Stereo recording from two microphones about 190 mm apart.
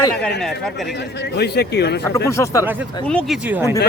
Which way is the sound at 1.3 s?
60° left (ahead or behind).